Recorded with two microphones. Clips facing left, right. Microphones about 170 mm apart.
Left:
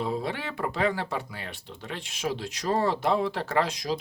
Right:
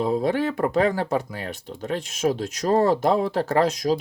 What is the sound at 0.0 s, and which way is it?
Speech, 45° right (ahead or behind).